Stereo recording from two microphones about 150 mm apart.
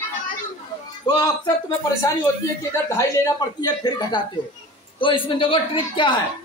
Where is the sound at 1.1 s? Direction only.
25° left (ahead or behind).